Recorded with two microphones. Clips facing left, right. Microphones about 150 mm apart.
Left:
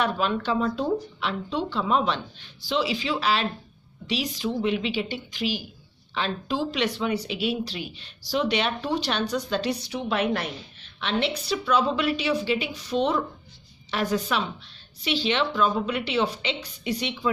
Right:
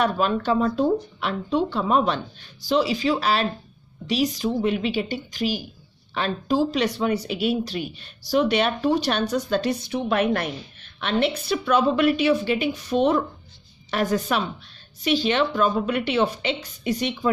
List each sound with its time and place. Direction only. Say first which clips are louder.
0.0 s speech: right 3 dB; 45° right (ahead or behind)